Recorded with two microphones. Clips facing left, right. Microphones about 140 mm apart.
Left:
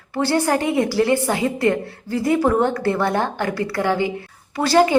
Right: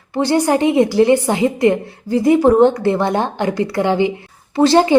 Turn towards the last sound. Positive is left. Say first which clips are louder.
# right 4 dB
turn(degrees=-25)  # may be behind; listen again after turning